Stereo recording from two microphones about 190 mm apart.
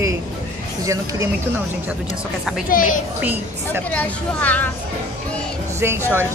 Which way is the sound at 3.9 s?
10° left (ahead or behind).